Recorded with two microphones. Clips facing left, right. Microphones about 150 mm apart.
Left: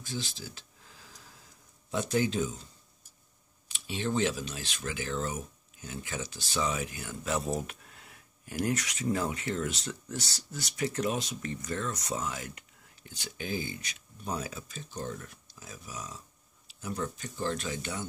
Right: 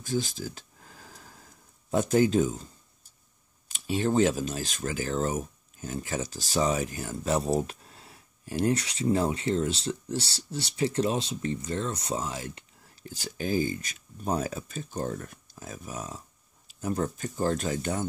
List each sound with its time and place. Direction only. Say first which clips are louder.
0.0 s a sound: right 8 dB; 45° right (ahead or behind)
1.9 s speech: right 6 dB; 45° right (ahead or behind); by 13.1 s 30° right (ahead or behind)
13.1 s speech: right 7 dB; 40° right (ahead or behind)